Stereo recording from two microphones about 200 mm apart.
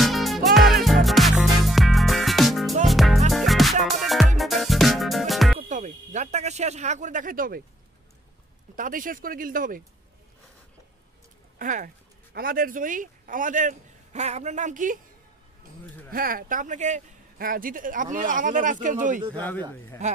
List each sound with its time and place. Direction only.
0.0 s music: centre (ahead or behind)
5.6 s a sound: 35° right (ahead or behind)
8.7 s speech: 40° right (ahead or behind)
11.5 s speech: 40° right (ahead or behind)
16.1 s speech: 45° right (ahead or behind)
19.3 s speech: 10° left (ahead or behind)
20.0 s speech: 35° right (ahead or behind)